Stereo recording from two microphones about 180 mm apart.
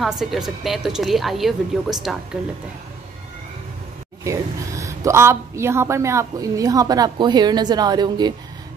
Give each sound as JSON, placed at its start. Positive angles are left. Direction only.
{"t": 0.2, "sound": "speech", "side_deg": 0}
{"t": 4.2, "sound": "speech", "side_deg": -15}